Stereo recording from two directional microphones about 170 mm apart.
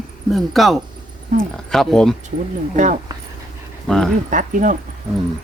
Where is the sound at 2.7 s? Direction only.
45° right (ahead or behind).